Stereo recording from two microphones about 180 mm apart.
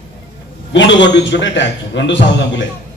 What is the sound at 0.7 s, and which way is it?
A man's voice, 90° left.